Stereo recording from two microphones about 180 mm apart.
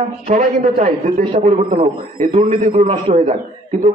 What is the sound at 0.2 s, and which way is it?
Speech, 50° right (ahead or behind).